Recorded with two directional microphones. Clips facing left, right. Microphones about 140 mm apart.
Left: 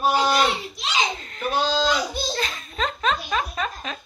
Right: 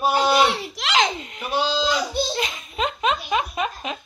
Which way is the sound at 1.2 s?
15° right (ahead or behind).